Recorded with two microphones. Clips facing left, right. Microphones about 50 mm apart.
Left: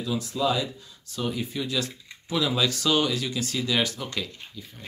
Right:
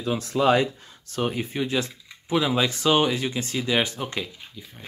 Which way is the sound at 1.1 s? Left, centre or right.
Right.